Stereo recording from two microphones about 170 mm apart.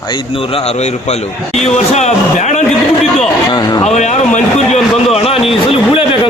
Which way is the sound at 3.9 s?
40° left (ahead or behind).